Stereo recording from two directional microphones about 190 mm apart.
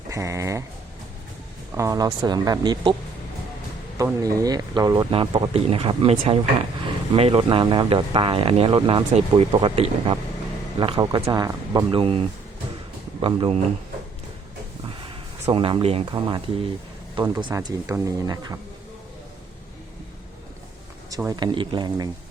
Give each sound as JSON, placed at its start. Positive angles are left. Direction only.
{"t": 0.1, "sound": "a sound", "side_deg": -15}
{"t": 1.7, "sound": "speech", "side_deg": -15}
{"t": 3.9, "sound": "speech", "side_deg": -15}
{"t": 15.0, "sound": "speech", "side_deg": -30}
{"t": 21.1, "sound": "speech", "side_deg": -15}